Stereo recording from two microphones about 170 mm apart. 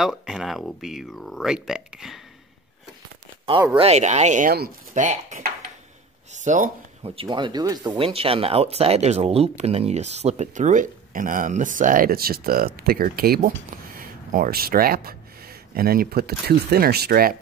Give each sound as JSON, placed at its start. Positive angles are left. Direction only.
{"t": 0.0, "sound": "speech", "side_deg": 0}
{"t": 3.7, "sound": "speech", "side_deg": -40}
{"t": 8.0, "sound": "speech", "side_deg": -35}